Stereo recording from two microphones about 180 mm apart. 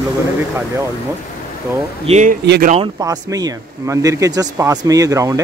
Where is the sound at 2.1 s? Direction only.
40° right (ahead or behind).